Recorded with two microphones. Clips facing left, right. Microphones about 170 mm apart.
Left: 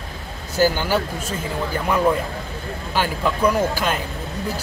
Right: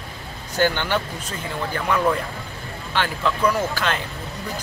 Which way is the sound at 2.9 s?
10° left (ahead or behind).